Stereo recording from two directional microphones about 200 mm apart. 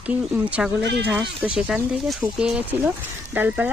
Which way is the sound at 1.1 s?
Centre (ahead or behind).